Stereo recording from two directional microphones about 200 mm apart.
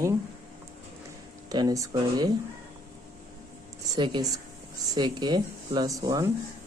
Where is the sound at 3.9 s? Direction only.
20° right (ahead or behind).